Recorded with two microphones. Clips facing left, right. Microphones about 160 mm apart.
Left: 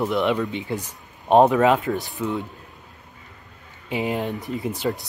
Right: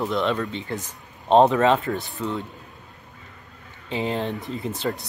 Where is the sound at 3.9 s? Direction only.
15° left (ahead or behind).